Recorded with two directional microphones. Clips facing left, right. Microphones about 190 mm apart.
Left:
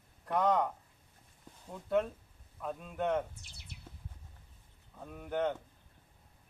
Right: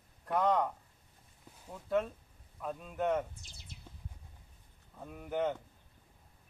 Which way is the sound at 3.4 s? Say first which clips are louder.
Even; 65° left (ahead or behind).